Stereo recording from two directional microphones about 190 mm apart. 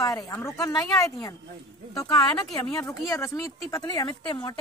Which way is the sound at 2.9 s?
15° left (ahead or behind).